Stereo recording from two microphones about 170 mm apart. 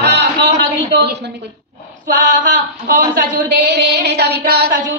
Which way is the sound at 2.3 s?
50° right (ahead or behind).